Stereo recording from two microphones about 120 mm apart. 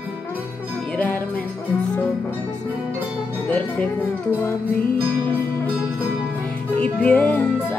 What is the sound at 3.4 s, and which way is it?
Music, 10° left (ahead or behind).